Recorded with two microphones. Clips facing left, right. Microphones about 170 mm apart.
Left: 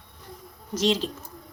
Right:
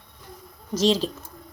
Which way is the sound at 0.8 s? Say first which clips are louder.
Right 3 dB; 35° right (ahead or behind).